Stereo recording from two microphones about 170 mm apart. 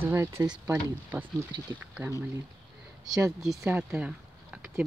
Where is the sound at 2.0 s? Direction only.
15° right (ahead or behind).